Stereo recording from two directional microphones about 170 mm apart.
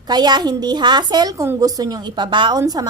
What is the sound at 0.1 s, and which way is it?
A woman's voice, 25° right (ahead or behind).